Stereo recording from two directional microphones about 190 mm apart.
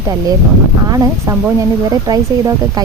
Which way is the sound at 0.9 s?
15° right (ahead or behind).